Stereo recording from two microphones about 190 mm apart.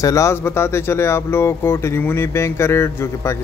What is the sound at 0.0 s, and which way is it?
A man's voice, 15° left (ahead or behind).